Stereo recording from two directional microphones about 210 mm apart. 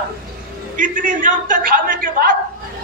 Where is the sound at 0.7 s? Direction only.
40° right (ahead or behind).